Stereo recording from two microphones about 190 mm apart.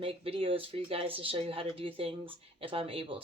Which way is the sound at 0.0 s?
30° right (ahead or behind).